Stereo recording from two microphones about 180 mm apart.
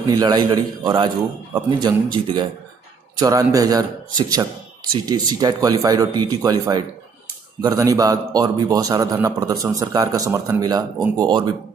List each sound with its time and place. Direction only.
0.0 s a man's voice: 25° right (ahead or behind)